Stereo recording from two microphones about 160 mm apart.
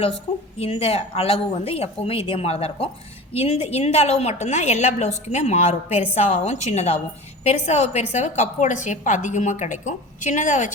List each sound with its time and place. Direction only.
0.6 s a woman's voice: 35° left (ahead or behind)
5.9 s a woman's voice: 10° right (ahead or behind)
6.1 s a woman's voice: 45° left (ahead or behind)